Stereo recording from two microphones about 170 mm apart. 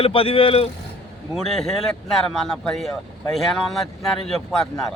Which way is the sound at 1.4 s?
Centre (ahead or behind).